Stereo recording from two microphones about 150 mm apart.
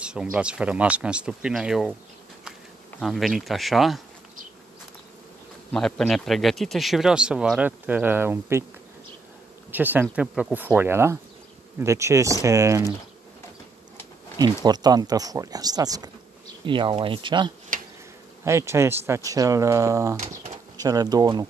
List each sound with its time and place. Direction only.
0.0 s speech: 5° right (ahead or behind)
3.0 s a man's voice: centre (ahead or behind)
5.7 s a man's voice: 5° left (ahead or behind); by 8.6 s 15° right (ahead or behind)
9.7 s speech: 10° right (ahead or behind)
14.4 s speech: 25° right (ahead or behind)
18.4 s speech: 20° right (ahead or behind)